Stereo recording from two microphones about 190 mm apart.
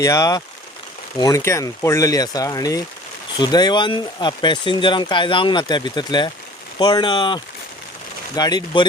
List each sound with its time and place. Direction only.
0.0 s speech: 15° left (ahead or behind)